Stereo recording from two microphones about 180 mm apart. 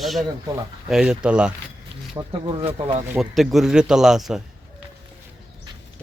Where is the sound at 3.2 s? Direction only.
Centre (ahead or behind).